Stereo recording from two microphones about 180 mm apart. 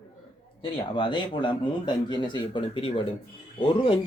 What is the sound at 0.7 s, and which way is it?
A man's voice, 25° left (ahead or behind).